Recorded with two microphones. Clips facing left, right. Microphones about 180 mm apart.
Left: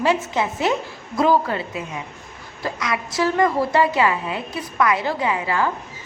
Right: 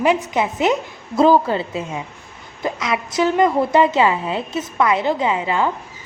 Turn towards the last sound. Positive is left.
turn(degrees=-20)  # may be behind; listen again after turning